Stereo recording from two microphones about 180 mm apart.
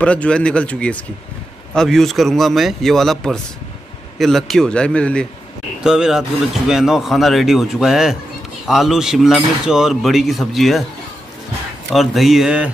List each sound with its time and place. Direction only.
0.0 s speech: 5° left (ahead or behind)
11.9 s speech: centre (ahead or behind)